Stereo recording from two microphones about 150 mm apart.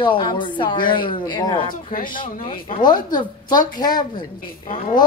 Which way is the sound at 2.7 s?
30° left (ahead or behind).